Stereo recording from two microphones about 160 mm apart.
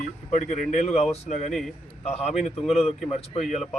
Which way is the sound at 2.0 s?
40° left (ahead or behind).